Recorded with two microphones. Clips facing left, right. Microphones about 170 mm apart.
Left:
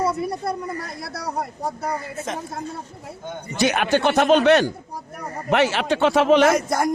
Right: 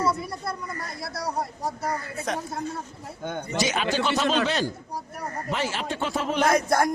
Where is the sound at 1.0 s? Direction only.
60° left (ahead or behind).